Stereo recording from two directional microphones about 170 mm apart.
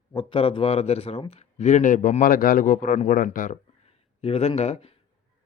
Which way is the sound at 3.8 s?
35° left (ahead or behind).